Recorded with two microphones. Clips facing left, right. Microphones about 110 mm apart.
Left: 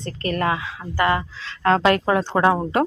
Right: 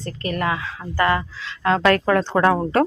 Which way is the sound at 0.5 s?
25° left (ahead or behind).